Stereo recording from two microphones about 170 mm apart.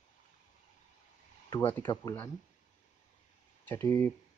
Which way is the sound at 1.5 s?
25° left (ahead or behind).